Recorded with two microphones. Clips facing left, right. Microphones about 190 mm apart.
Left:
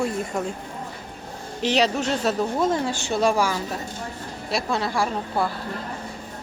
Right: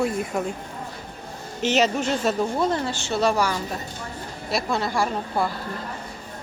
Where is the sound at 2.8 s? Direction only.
15° left (ahead or behind).